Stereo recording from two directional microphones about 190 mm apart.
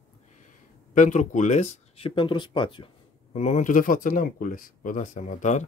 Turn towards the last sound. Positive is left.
turn(degrees=40)  # may be behind; listen again after turning